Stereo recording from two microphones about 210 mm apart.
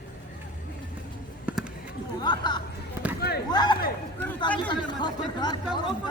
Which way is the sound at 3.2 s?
50° left (ahead or behind).